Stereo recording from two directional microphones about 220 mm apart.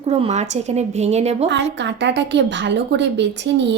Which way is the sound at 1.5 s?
55° right (ahead or behind).